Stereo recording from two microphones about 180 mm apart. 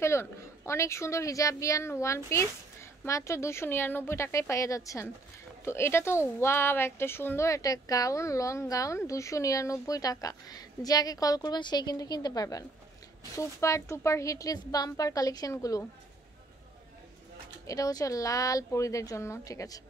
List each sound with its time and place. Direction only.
0.0 s a woman's voice: 15° left (ahead or behind)
17.6 s speech: 20° left (ahead or behind)